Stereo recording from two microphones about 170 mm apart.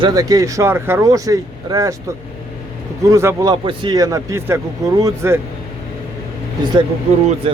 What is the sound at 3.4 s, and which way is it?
Speech, 25° right (ahead or behind).